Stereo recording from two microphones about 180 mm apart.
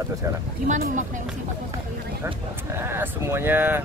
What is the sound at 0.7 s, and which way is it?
Speech, 45° right (ahead or behind).